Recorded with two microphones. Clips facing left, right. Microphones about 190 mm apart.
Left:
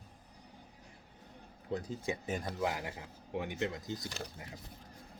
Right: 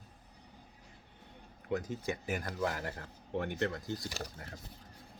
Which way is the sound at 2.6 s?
15° left (ahead or behind).